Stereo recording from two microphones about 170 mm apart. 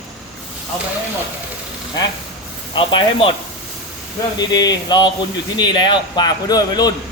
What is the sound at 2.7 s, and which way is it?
Speech, 30° left (ahead or behind).